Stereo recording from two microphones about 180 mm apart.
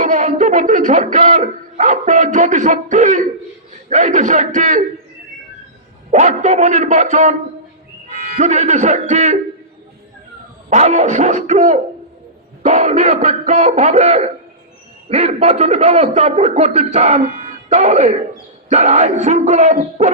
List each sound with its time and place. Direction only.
0.0 s a sound: 45° right (ahead or behind)
3.8 s a man's voice: 45° right (ahead or behind)
6.1 s a man's voice: 40° right (ahead or behind)
8.4 s a man's voice: 40° right (ahead or behind)
10.7 s a man's voice: 40° right (ahead or behind)